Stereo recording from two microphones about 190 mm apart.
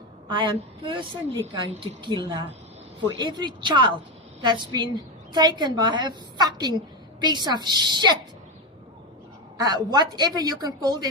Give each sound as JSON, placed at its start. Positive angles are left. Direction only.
{"t": 0.3, "sound": "a woman's voice", "side_deg": -25}
{"t": 9.6, "sound": "a woman's voice", "side_deg": -20}